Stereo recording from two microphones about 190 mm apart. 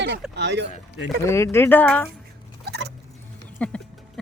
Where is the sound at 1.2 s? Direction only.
15° left (ahead or behind).